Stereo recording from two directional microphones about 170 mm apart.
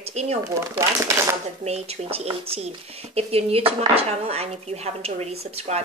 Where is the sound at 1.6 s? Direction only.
40° right (ahead or behind).